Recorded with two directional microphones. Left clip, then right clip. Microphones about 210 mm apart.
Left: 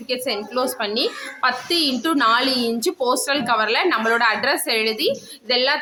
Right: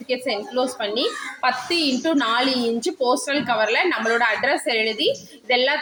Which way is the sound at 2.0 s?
10° left (ahead or behind).